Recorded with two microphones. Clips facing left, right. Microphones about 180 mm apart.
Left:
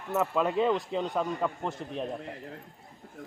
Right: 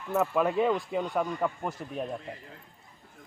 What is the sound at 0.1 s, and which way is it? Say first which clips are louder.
A man's voice: right 1 dB; 10° right (ahead or behind).